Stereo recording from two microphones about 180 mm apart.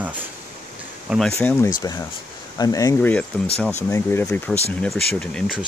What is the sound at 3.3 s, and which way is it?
Speech, 5° left (ahead or behind).